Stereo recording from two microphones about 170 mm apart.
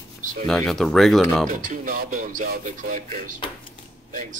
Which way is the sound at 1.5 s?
55° right (ahead or behind).